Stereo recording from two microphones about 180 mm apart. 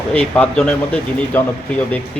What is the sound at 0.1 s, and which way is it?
Speech, 5° left (ahead or behind).